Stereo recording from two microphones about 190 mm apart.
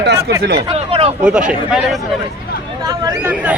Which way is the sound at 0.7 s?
30° right (ahead or behind).